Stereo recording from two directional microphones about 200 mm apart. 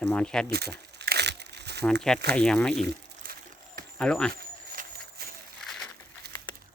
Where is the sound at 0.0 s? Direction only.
5° left (ahead or behind).